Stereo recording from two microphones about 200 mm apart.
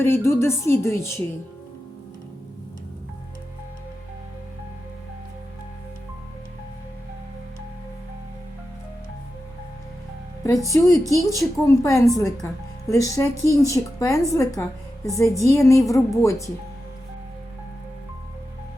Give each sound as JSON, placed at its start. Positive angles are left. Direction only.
{"t": 0.0, "sound": "a woman's voice", "side_deg": 10}
{"t": 10.4, "sound": "a woman's voice", "side_deg": 15}